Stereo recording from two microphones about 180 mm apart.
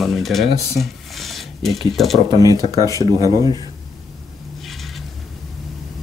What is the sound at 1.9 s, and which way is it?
Speech, centre (ahead or behind).